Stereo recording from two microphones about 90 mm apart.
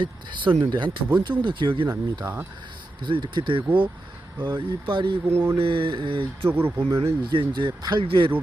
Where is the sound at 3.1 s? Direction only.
60° right (ahead or behind).